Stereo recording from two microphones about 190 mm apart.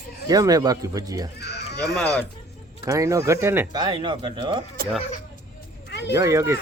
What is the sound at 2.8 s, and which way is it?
Speech, 15° right (ahead or behind).